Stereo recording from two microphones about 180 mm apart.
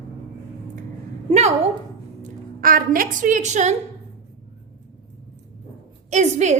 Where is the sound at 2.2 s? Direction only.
50° right (ahead or behind).